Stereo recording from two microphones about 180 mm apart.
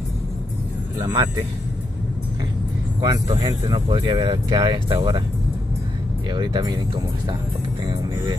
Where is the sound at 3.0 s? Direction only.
20° right (ahead or behind).